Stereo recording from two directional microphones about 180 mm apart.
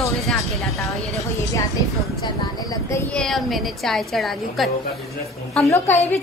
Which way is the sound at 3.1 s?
Centre (ahead or behind).